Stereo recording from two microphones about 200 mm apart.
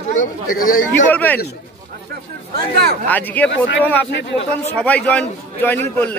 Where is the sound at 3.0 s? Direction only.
10° left (ahead or behind).